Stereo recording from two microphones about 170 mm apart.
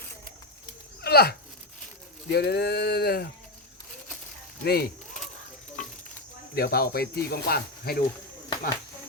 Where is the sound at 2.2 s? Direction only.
75° left (ahead or behind).